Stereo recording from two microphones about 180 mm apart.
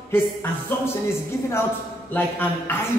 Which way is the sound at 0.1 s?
15° left (ahead or behind).